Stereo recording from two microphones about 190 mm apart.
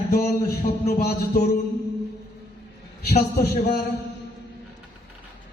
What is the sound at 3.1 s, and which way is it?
Speech, 60° left (ahead or behind).